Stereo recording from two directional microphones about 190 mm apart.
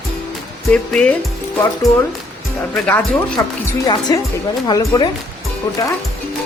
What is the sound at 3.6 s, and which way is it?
Speech, 20° left (ahead or behind).